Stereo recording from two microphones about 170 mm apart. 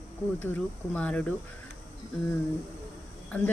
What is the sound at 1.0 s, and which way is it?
Speech, 5° left (ahead or behind).